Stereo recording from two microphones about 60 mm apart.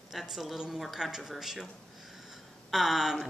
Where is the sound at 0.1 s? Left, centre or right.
Centre.